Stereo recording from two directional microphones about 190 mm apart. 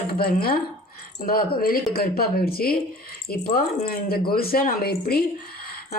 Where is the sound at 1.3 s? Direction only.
50° left (ahead or behind).